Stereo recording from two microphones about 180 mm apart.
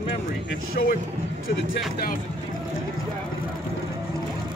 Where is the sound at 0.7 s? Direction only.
55° left (ahead or behind).